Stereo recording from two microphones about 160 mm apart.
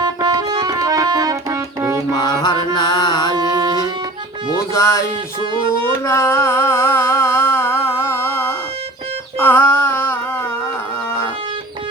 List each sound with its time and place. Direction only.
0.0 s music: 25° right (ahead or behind)
2.1 s mantra: 25° left (ahead or behind)
3.3 s music: 25° right (ahead or behind)
4.7 s music: 20° left (ahead or behind)
6.1 s music: 15° left (ahead or behind)